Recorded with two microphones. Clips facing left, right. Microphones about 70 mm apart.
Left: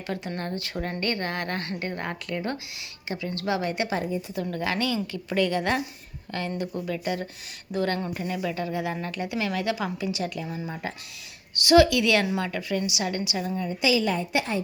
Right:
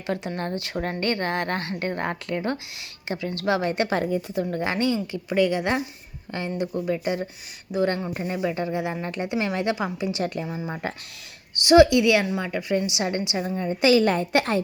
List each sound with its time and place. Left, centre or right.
0.2 s speech: centre
0.6 s speech: right
4.4 s speech: right
5.1 s a woman's voice: centre
10.1 s speech: right
10.4 s speech: right
12.2 s speech: centre
12.5 s a woman's voice: centre
12.7 s speech: right
13.6 s a woman's voice: right